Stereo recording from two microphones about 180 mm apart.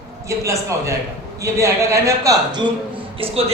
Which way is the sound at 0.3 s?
15° right (ahead or behind).